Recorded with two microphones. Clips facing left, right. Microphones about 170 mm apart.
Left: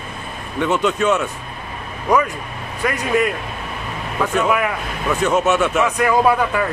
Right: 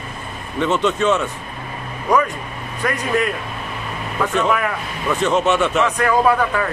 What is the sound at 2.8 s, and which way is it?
A man's voice, 5° left (ahead or behind).